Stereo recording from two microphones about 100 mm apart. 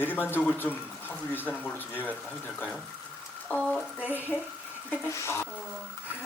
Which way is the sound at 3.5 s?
10° left (ahead or behind).